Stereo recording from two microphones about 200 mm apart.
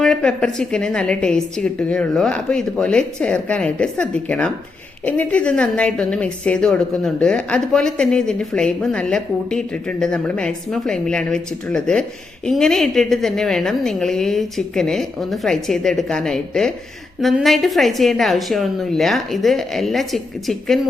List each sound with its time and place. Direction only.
0.0 s a woman's voice: 5° left (ahead or behind)